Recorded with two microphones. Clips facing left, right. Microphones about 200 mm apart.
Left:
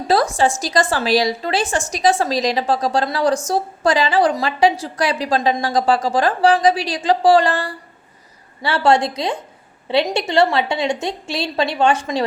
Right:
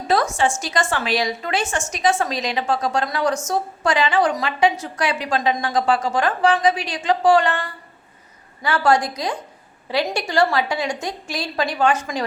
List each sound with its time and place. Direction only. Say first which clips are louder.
0.1 s a woman's voice: left 3 dB; 35° left (ahead or behind)